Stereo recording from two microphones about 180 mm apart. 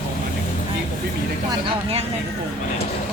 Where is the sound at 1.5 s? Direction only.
25° right (ahead or behind).